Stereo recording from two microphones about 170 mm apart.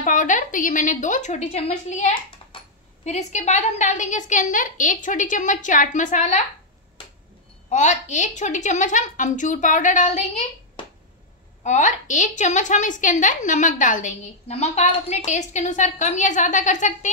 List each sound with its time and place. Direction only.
0.0 s a woman's voice: 50° left (ahead or behind)
7.7 s a woman's voice: 45° left (ahead or behind)
11.6 s a woman's voice: 45° left (ahead or behind)